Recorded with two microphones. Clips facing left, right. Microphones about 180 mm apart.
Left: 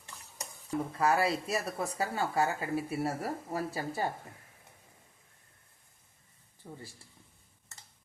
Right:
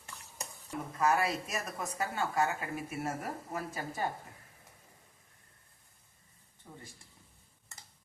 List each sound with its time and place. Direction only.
0.7 s speech: 30° left (ahead or behind)